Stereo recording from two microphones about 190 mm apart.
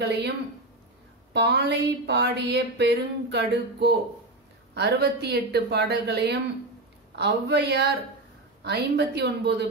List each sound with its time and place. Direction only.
0.0 s speech: 60° right (ahead or behind)
1.3 s speech: 65° right (ahead or behind)